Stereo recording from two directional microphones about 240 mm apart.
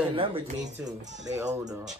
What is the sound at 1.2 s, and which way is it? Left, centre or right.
Speech, centre.